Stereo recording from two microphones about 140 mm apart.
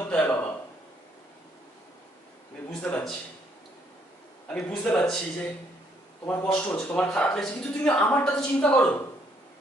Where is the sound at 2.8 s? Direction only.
10° left (ahead or behind).